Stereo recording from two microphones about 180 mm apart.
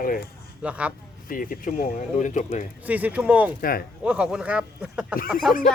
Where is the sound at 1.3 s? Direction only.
50° left (ahead or behind).